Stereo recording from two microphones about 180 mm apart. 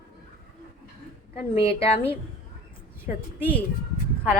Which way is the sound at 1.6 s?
30° left (ahead or behind).